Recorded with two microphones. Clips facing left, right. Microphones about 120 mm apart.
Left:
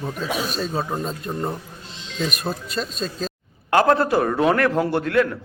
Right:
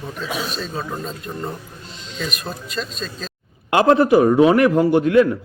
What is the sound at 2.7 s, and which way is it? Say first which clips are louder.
Speech: left 1 dB; 40° left (ahead or behind).